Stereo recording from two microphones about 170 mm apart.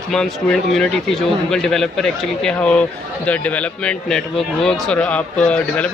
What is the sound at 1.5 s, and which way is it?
A man's voice, centre (ahead or behind).